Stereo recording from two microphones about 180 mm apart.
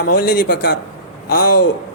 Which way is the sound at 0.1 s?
55° left (ahead or behind).